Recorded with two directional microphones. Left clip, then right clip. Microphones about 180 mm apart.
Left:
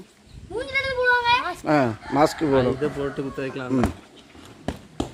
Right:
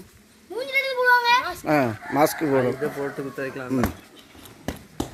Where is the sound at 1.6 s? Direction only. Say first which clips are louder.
Left 1 dB; centre (ahead or behind).